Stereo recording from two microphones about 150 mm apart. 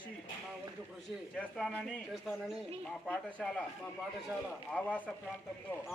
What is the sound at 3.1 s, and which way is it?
Speech, 10° left (ahead or behind).